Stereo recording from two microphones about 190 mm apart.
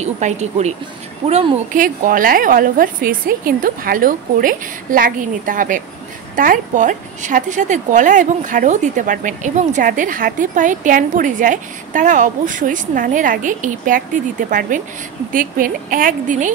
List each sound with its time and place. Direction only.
0.0 s a woman's voice: 35° right (ahead or behind)